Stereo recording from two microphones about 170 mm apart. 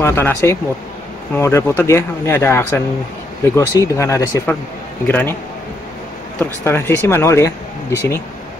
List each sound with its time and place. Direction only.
0.0 s speech: 15° left (ahead or behind)
6.4 s speech: 15° left (ahead or behind)